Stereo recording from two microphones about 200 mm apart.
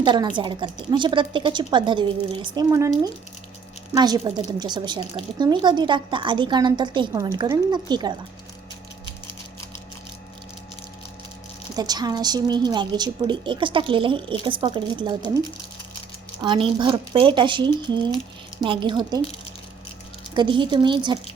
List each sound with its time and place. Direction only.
0.0 s speech: 25° right (ahead or behind)
3.9 s speech: 20° right (ahead or behind)
11.8 s speech: 20° right (ahead or behind)
16.4 s speech: 25° right (ahead or behind)
20.3 s speech: 25° right (ahead or behind)